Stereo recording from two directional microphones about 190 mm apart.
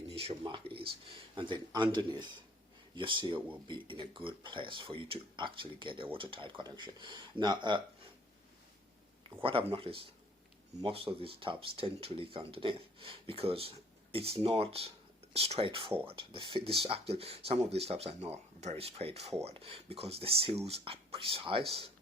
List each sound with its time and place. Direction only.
0.1 s speech: 30° right (ahead or behind)
9.4 s speech: 30° right (ahead or behind)